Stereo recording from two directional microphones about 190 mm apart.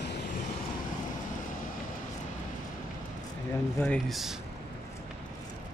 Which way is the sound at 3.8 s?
5° left (ahead or behind).